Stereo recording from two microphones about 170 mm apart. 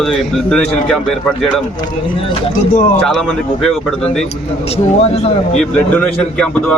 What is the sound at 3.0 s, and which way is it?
Speech, 5° left (ahead or behind).